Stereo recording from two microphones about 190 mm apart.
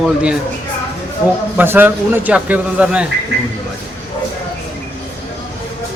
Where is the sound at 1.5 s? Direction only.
10° right (ahead or behind).